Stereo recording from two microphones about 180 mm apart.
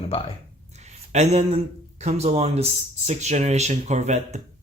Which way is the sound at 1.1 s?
40° right (ahead or behind).